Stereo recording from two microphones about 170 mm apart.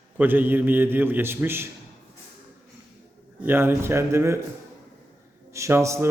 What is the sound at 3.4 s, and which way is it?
Speech, 10° right (ahead or behind).